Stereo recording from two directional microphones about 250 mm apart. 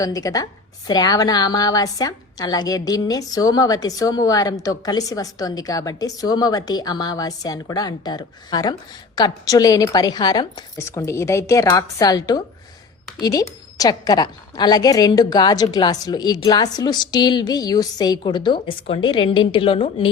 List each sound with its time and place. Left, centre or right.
0.0 s a woman's voice: centre